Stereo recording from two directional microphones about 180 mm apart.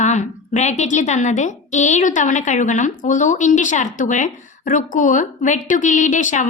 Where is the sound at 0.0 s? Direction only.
40° left (ahead or behind).